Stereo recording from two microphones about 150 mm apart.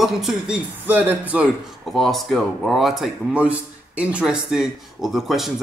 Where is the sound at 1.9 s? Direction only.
Centre (ahead or behind).